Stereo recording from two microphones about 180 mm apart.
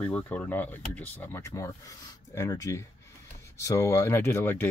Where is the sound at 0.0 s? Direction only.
10° left (ahead or behind).